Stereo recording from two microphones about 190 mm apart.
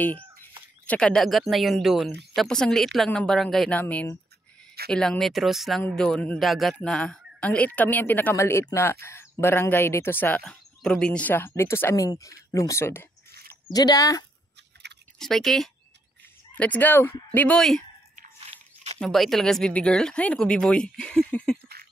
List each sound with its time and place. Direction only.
0.8 s speech: 5° left (ahead or behind)
15.1 s speech: centre (ahead or behind)
18.9 s speech: centre (ahead or behind)